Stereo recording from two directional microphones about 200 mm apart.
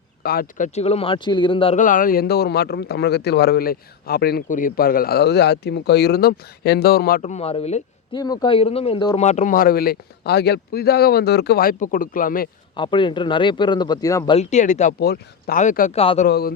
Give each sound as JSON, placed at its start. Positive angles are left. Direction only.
{"t": 0.2, "sound": "speech", "side_deg": 50}
{"t": 1.8, "sound": "speech", "side_deg": 45}
{"t": 7.2, "sound": "speech", "side_deg": 35}
{"t": 8.2, "sound": "speech", "side_deg": 20}
{"t": 9.2, "sound": "speech", "side_deg": 35}
{"t": 12.7, "sound": "speech", "side_deg": 25}
{"t": 14.3, "sound": "speech", "side_deg": 35}
{"t": 16.0, "sound": "speech", "side_deg": 30}
{"t": 16.2, "sound": "speech", "side_deg": 50}